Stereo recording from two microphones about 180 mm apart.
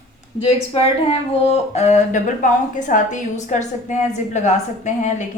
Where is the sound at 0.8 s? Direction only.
30° left (ahead or behind).